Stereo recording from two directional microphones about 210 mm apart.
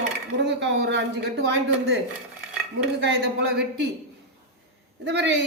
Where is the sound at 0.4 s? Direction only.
55° right (ahead or behind).